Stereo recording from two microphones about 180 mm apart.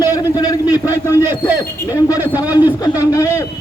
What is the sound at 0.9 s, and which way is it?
A man's voice, 10° right (ahead or behind).